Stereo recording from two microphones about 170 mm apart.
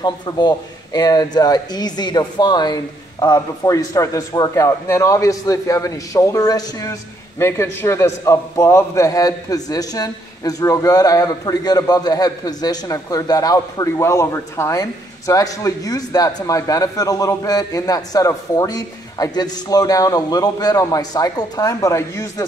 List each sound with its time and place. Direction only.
0.0 s a man's voice: 25° left (ahead or behind)